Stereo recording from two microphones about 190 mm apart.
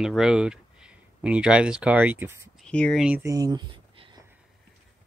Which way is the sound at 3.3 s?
20° right (ahead or behind).